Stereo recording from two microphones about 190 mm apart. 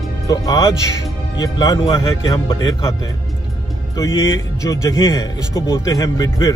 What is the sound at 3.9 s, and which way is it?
Speech, 15° left (ahead or behind).